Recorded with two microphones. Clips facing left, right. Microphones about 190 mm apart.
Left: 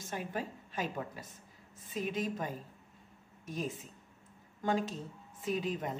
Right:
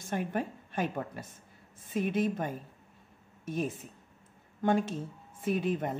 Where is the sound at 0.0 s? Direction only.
55° right (ahead or behind).